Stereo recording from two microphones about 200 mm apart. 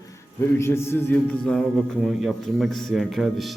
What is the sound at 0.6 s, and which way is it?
A man's voice, 10° left (ahead or behind).